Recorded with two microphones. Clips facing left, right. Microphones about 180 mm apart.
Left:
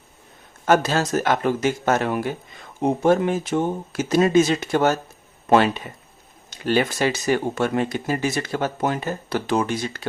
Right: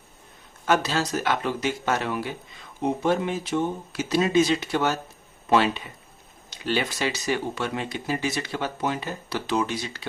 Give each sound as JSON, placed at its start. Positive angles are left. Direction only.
{"t": 0.6, "sound": "speech", "side_deg": 50}